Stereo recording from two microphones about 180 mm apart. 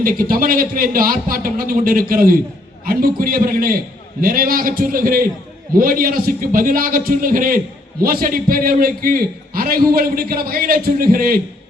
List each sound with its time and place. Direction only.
0.0 s a man's voice: 50° right (ahead or behind)